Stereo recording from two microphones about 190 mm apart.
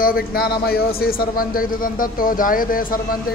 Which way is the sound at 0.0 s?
50° left (ahead or behind).